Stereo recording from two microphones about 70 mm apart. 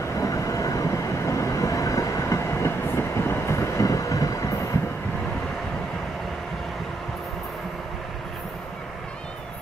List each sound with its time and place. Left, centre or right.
0.2 s train: left
3.0 s train: left